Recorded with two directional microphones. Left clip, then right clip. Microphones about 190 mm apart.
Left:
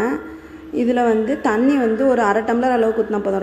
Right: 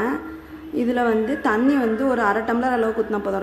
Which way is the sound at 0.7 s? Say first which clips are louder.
Left 3 dB; 10° left (ahead or behind).